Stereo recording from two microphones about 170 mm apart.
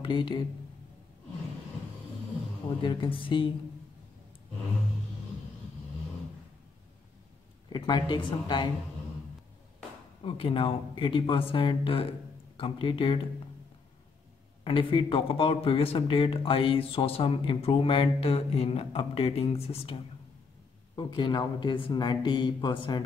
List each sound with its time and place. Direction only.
0.0 s speech: 30° left (ahead or behind)
2.8 s speech: 30° left (ahead or behind)
7.7 s speech: 25° left (ahead or behind)
10.2 s speech: 30° left (ahead or behind)
14.6 s speech: 30° left (ahead or behind)